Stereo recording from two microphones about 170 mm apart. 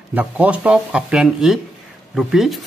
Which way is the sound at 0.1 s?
10° right (ahead or behind).